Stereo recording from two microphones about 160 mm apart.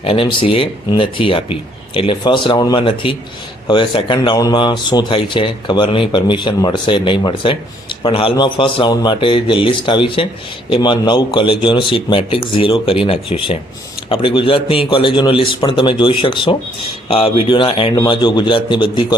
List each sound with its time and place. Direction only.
0.0 s a man's voice: 35° left (ahead or behind)